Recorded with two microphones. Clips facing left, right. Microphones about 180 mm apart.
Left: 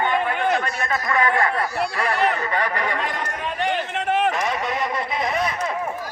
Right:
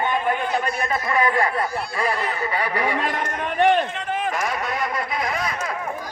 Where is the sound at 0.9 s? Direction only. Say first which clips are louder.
Left 1 dB; 30° right (ahead or behind).